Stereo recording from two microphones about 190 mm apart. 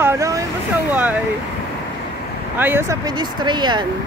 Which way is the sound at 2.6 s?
10° right (ahead or behind).